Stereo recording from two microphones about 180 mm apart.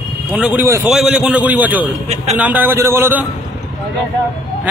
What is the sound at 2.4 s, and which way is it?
Speech, 10° right (ahead or behind).